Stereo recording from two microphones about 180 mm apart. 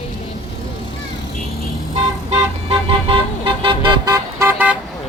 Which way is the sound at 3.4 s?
30° right (ahead or behind).